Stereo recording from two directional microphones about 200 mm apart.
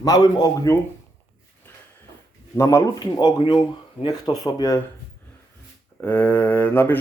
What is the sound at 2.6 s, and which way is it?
Speech, 15° left (ahead or behind).